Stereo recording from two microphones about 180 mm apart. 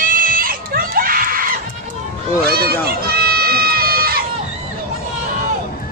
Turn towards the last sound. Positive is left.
turn(degrees=-55)  # may be behind; listen again after turning